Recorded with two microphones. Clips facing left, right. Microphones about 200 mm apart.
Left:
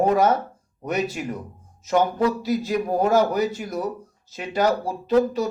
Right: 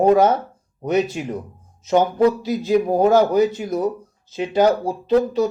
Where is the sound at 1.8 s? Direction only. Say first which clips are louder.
Right 4 dB; 25° right (ahead or behind).